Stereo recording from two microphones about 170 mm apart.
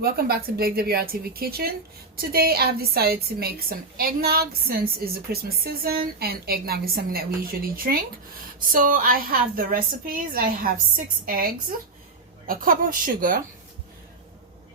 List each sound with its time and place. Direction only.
0.0 s a woman's voice: 65° right (ahead or behind)